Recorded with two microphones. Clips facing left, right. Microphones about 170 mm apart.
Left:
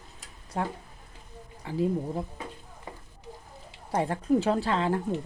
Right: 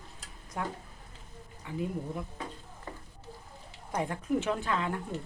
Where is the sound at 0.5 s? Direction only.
30° left (ahead or behind).